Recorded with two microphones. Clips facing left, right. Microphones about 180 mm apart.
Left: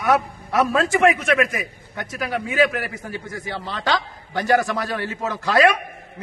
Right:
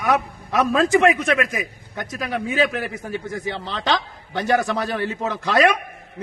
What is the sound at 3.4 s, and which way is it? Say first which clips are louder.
A man's voice: even; 20° right (ahead or behind).